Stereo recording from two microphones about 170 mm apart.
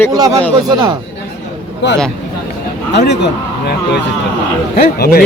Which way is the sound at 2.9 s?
85° left.